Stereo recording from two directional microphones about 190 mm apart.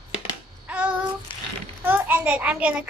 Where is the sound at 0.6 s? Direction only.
5° right (ahead or behind).